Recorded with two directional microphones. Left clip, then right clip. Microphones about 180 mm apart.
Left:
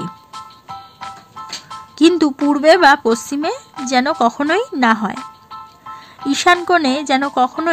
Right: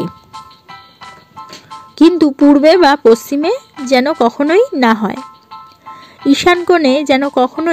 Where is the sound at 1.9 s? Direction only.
15° right (ahead or behind).